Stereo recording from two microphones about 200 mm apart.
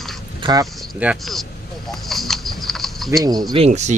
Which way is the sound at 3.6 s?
35° right (ahead or behind).